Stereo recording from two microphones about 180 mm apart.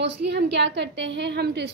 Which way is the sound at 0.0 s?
75° right (ahead or behind).